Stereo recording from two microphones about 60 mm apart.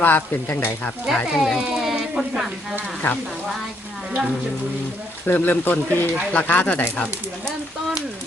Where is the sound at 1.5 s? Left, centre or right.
Centre.